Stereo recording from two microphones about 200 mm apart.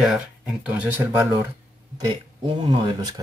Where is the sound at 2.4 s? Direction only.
20° right (ahead or behind).